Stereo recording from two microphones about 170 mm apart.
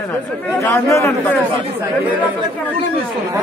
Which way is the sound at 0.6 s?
15° left (ahead or behind).